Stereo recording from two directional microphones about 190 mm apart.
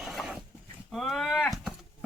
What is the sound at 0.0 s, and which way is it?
Dog, centre (ahead or behind).